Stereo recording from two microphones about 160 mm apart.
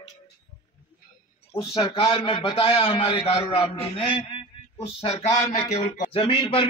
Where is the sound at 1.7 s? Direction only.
35° left (ahead or behind).